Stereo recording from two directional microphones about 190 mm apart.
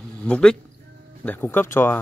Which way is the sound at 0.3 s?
5° left (ahead or behind).